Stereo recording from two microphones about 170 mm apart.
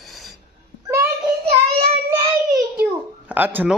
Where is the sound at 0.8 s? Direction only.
15° right (ahead or behind).